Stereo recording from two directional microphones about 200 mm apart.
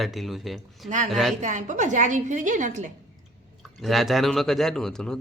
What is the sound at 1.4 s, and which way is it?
A woman's voice, 40° right (ahead or behind).